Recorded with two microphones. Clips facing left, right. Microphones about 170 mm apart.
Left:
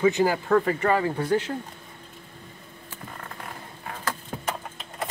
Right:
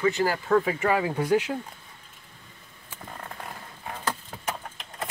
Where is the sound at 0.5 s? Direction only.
5° right (ahead or behind).